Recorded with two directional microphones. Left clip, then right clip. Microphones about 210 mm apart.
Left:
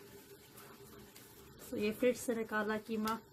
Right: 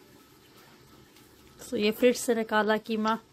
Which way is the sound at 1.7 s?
40° right (ahead or behind).